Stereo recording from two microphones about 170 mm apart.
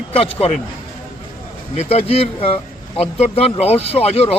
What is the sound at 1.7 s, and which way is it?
Speech, 40° left (ahead or behind).